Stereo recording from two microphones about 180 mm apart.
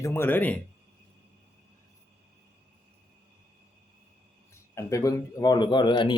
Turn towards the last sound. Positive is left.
turn(degrees=25)  # may be behind; listen again after turning